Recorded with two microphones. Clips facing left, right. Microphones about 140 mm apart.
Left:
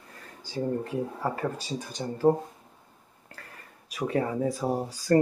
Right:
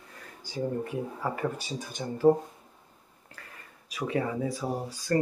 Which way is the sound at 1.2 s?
40° left (ahead or behind).